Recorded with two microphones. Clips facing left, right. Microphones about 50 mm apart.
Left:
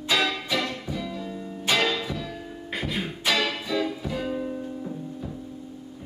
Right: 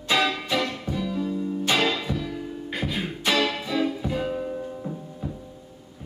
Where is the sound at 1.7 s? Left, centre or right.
Centre.